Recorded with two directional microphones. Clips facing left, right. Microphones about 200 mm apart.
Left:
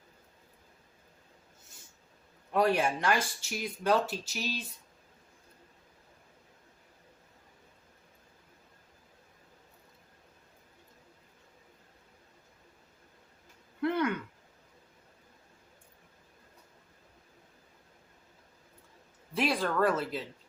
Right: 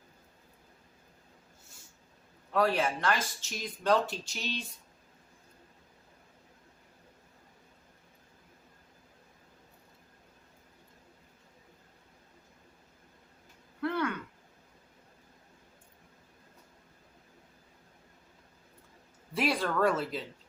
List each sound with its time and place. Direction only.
2.5 s speech: 15° left (ahead or behind)
13.8 s a sound: 15° left (ahead or behind)
19.3 s speech: centre (ahead or behind)